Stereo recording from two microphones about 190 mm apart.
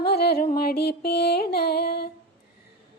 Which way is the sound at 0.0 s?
55° left (ahead or behind).